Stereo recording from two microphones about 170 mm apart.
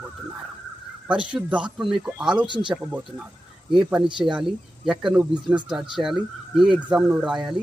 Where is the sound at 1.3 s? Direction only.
5° right (ahead or behind).